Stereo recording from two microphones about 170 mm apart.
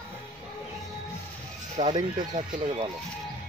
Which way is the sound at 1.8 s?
25° right (ahead or behind).